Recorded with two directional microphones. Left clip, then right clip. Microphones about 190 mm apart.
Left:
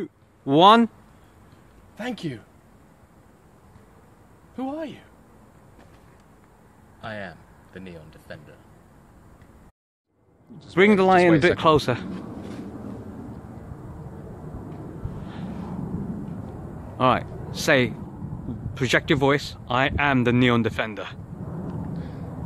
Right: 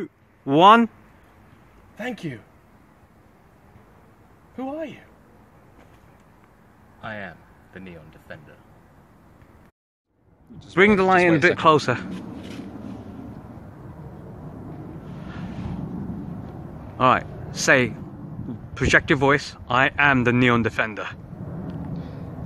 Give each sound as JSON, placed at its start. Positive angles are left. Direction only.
{"t": 0.0, "sound": "speech", "side_deg": 10}
{"t": 2.0, "sound": "speech", "side_deg": -10}
{"t": 4.6, "sound": "speech", "side_deg": -10}
{"t": 7.0, "sound": "speech", "side_deg": 25}
{"t": 10.6, "sound": "speech", "side_deg": 10}
{"t": 16.9, "sound": "speech", "side_deg": 5}
{"t": 21.9, "sound": "a sound", "side_deg": 10}